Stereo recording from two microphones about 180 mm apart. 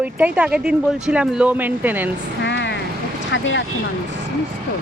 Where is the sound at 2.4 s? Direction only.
75° left (ahead or behind).